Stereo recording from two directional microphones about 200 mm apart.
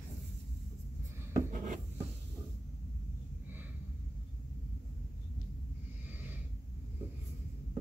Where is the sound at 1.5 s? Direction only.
40° right (ahead or behind).